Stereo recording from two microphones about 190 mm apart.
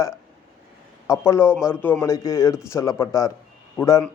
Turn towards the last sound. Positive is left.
turn(degrees=15)  # may be behind; listen again after turning